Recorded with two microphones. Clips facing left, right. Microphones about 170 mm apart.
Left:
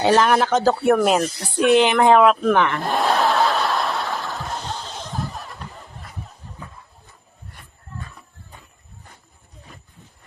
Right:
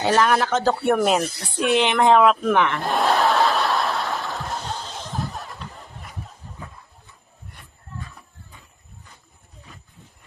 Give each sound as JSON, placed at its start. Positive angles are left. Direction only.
{"t": 0.0, "sound": "speech", "side_deg": 20}
{"t": 0.6, "sound": "speech", "side_deg": 0}
{"t": 2.4, "sound": "snicker", "side_deg": -5}